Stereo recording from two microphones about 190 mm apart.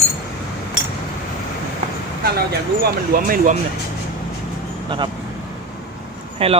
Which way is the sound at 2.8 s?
50° right (ahead or behind).